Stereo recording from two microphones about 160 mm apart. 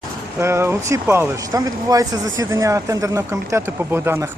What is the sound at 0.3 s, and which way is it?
Speech, 15° right (ahead or behind).